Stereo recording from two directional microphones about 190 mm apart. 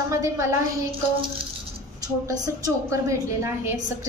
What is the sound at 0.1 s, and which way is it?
Speech, 15° right (ahead or behind).